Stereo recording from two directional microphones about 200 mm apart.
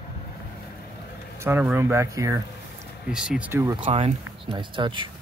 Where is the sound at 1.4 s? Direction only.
10° right (ahead or behind).